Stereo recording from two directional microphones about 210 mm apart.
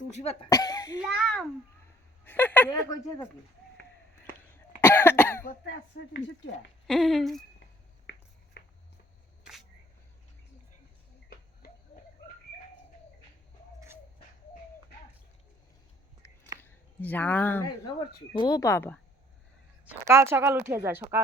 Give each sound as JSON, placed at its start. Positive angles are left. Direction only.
{"t": 0.1, "sound": "speech", "side_deg": 30}
{"t": 0.5, "sound": "speech", "side_deg": 15}
{"t": 1.0, "sound": "speech", "side_deg": 0}
{"t": 4.8, "sound": "cough", "side_deg": 10}
{"t": 5.6, "sound": "speech", "side_deg": 55}
{"t": 6.8, "sound": "speech", "side_deg": 0}
{"t": 8.1, "sound": "finger snapping", "side_deg": 55}
{"t": 8.6, "sound": "a sound", "side_deg": 55}
{"t": 11.6, "sound": "a sound", "side_deg": 45}
{"t": 13.7, "sound": "a sound", "side_deg": -10}
{"t": 16.6, "sound": "speech", "side_deg": 10}
{"t": 19.8, "sound": "a woman's voice", "side_deg": -10}